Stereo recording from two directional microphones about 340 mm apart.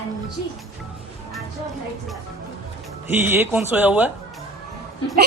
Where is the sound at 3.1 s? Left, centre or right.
Centre.